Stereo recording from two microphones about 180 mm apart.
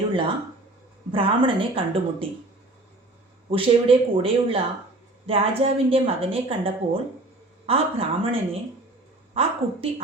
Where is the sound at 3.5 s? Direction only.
30° right (ahead or behind).